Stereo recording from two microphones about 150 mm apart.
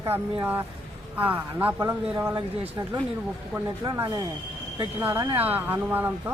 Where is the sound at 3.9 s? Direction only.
20° right (ahead or behind).